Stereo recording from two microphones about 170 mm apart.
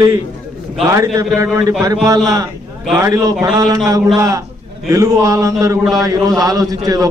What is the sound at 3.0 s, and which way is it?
Speech, 20° right (ahead or behind).